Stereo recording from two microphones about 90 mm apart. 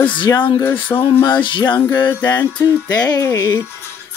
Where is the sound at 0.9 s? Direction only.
40° left (ahead or behind).